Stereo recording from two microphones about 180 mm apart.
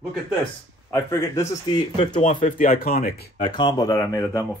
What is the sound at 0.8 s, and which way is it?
Speech, 15° left (ahead or behind).